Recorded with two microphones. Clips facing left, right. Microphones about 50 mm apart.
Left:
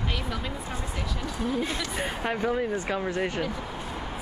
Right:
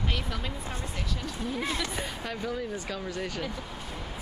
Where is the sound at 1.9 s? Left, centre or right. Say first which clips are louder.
Left 6 dB; left.